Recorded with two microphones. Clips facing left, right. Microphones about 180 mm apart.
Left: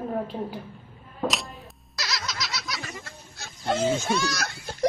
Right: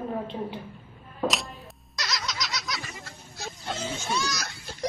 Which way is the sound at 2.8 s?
60° left (ahead or behind).